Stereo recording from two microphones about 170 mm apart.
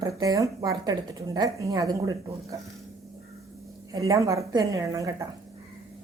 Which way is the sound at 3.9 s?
20° right (ahead or behind).